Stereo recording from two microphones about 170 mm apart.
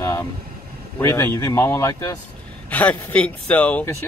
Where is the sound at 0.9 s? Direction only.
15° left (ahead or behind).